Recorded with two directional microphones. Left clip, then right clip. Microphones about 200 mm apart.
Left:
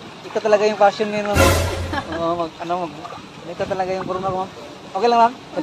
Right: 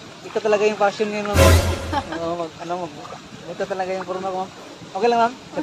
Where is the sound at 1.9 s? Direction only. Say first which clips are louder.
Right 3 dB; 35° right (ahead or behind).